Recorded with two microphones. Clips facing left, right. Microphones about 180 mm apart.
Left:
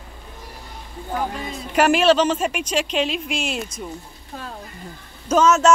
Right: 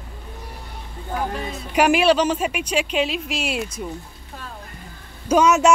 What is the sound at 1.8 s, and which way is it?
A woman's voice, 10° right (ahead or behind).